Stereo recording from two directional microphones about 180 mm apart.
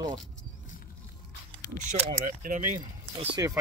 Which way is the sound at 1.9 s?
45° right (ahead or behind).